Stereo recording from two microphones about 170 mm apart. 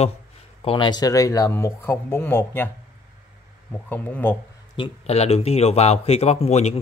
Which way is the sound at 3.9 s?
10° left (ahead or behind).